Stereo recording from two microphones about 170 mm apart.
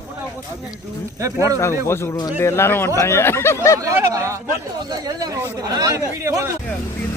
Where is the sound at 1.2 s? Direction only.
15° right (ahead or behind).